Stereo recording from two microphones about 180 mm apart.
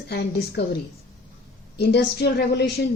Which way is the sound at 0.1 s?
65° left (ahead or behind).